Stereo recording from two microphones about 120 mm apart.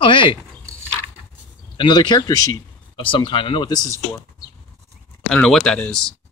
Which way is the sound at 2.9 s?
45° left (ahead or behind).